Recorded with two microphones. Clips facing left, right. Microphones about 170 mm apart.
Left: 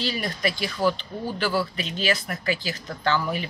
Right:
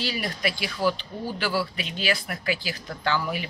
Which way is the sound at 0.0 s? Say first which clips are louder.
Left 2 dB; 10° right (ahead or behind).